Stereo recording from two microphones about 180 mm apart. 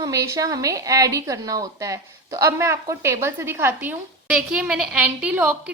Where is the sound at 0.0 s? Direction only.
20° right (ahead or behind).